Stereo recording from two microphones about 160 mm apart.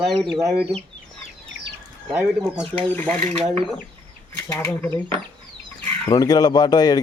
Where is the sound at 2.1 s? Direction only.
10° right (ahead or behind).